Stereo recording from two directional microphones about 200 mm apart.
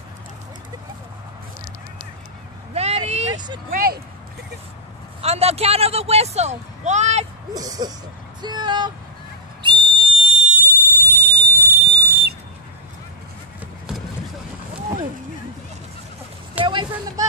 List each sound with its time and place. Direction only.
2.7 s vehicle: 30° right (ahead or behind)
3.3 s vehicle: 20° right (ahead or behind)
3.7 s speech: 50° right (ahead or behind)
5.2 s speech: 30° right (ahead or behind)
7.5 s speech: 20° right (ahead or behind)
9.6 s whistle: 25° right (ahead or behind); by 12.4 s 55° right (ahead or behind)
16.6 s a sound: 25° right (ahead or behind)